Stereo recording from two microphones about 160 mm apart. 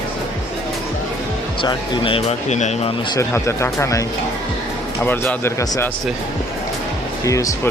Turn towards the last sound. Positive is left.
turn(degrees=20)  # may be behind; listen again after turning